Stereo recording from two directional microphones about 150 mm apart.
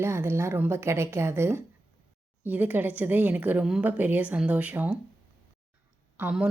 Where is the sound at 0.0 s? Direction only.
15° right (ahead or behind).